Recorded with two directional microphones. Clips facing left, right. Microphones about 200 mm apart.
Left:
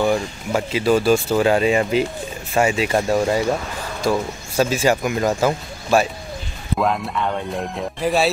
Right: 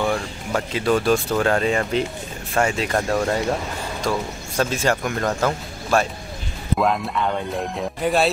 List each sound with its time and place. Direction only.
0.5 s speech: 5° left (ahead or behind)